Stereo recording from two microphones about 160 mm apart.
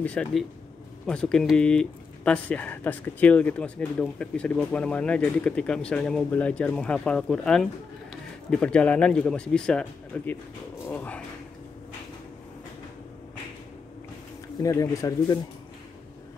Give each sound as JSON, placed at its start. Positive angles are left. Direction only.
{"t": 0.0, "sound": "speech", "side_deg": 5}
{"t": 14.6, "sound": "speech", "side_deg": 20}